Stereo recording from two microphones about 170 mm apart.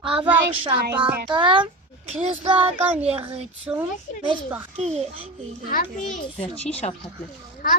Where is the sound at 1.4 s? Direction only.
30° right (ahead or behind).